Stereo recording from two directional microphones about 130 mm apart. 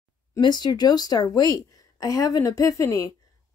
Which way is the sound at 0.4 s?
35° left (ahead or behind).